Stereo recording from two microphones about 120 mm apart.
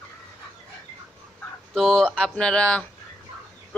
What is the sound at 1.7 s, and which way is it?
Speech, 5° left (ahead or behind).